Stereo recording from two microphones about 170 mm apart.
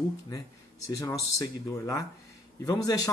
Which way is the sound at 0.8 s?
20° left (ahead or behind).